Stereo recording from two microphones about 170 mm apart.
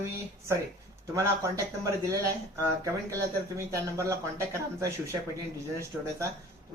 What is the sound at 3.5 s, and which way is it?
Speech, 15° right (ahead or behind).